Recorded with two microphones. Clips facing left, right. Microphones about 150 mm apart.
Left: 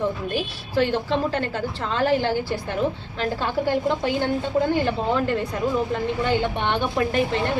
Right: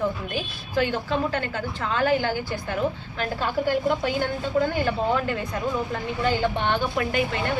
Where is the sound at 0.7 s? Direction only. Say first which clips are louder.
Left 3 dB; 30° left (ahead or behind).